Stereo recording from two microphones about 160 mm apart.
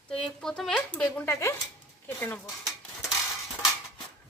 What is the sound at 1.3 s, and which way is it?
Speech, 20° left (ahead or behind).